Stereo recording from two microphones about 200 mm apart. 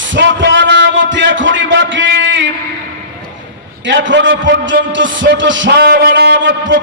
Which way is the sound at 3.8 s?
65° right (ahead or behind).